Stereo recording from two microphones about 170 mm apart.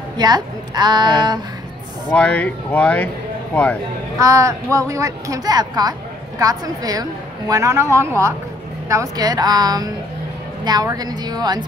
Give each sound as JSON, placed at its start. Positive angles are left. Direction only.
{"t": 0.2, "sound": "a woman's voice", "side_deg": -25}
{"t": 2.0, "sound": "speech", "side_deg": 10}
{"t": 4.2, "sound": "a woman's voice", "side_deg": -20}